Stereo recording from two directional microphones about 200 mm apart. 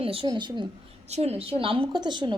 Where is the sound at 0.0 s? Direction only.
25° right (ahead or behind).